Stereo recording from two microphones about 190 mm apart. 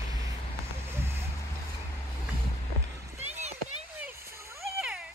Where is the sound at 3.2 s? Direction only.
35° right (ahead or behind).